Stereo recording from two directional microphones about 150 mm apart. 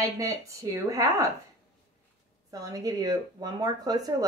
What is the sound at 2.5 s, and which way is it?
Speech, 25° right (ahead or behind).